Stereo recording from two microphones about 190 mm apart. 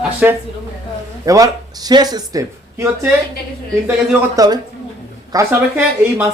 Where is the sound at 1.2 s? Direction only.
20° right (ahead or behind).